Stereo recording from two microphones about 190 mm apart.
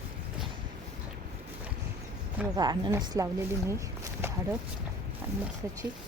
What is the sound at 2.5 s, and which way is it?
Speech, 20° right (ahead or behind).